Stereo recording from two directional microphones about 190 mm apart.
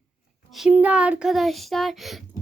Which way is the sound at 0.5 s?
5° right (ahead or behind).